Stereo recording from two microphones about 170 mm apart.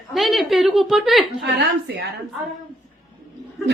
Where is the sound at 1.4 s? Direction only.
85° right.